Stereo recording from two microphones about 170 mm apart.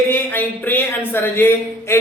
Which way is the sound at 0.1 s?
10° left (ahead or behind).